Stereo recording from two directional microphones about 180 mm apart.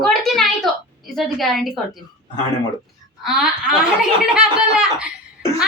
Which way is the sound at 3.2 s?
Centre (ahead or behind).